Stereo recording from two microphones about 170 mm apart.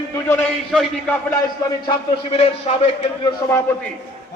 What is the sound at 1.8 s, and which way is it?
Speech, 30° left (ahead or behind).